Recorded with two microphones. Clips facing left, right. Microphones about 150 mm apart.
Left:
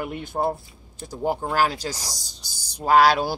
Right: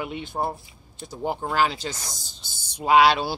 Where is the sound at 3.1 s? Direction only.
10° left (ahead or behind).